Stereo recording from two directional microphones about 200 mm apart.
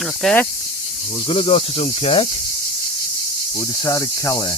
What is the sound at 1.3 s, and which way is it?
Speech, 30° left (ahead or behind).